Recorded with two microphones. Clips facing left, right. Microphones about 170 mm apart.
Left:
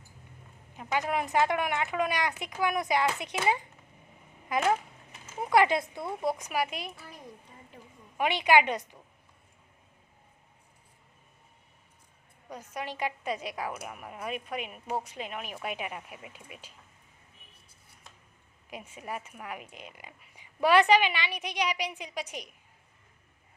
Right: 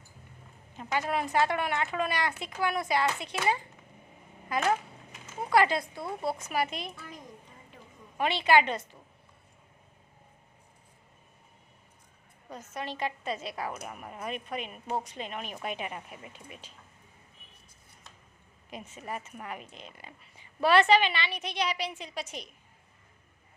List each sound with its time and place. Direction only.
0.8 s a woman's voice: 15° left (ahead or behind)
8.2 s a woman's voice: 15° left (ahead or behind)
12.5 s a woman's voice: 15° left (ahead or behind)
18.7 s a woman's voice: 10° left (ahead or behind)